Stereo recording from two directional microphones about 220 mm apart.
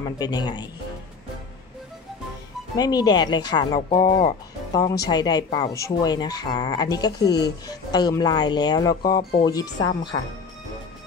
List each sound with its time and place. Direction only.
0.0 s speech: 20° left (ahead or behind)
2.8 s speech: 20° left (ahead or behind)